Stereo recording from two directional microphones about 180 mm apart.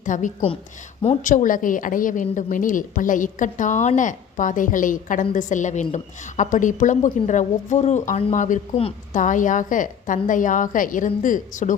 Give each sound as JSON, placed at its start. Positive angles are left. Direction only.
{"t": 0.0, "sound": "a woman's voice", "side_deg": 45}